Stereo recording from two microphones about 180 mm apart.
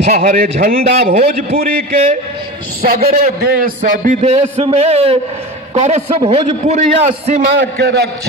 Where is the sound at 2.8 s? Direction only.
55° right (ahead or behind); by 7.4 s 40° right (ahead or behind).